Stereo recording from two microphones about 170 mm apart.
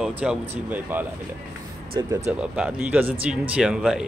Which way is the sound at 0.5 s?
10° right (ahead or behind).